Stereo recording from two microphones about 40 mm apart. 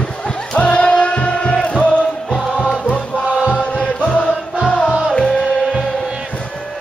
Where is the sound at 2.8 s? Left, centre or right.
Left.